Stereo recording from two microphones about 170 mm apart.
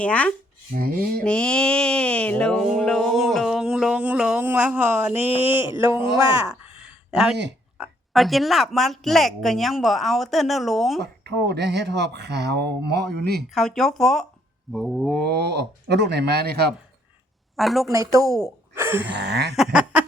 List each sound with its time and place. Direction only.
0.0 s speech: 10° left (ahead or behind)
0.8 s a sound: 60° right (ahead or behind)
1.2 s a sound: 5° left (ahead or behind)
5.4 s speech: 10° right (ahead or behind)
7.1 s speech: 5° right (ahead or behind)
11.0 s speech: 75° right (ahead or behind)
13.5 s speech: centre (ahead or behind)
15.3 s speech: 80° right
17.6 s speech: centre (ahead or behind)
17.9 s a woman's voice: 20° right (ahead or behind)
18.4 s a sound: 15° right (ahead or behind)
19.1 s a sound: 80° right
19.5 s speech: 5° right (ahead or behind)